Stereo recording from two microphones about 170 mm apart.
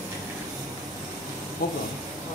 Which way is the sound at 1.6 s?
60° left (ahead or behind).